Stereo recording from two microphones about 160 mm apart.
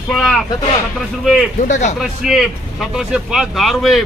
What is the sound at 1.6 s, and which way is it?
Speech, 50° left (ahead or behind).